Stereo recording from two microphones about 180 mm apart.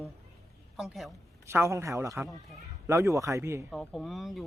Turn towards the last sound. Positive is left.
turn(degrees=0)  # may be behind; listen again after turning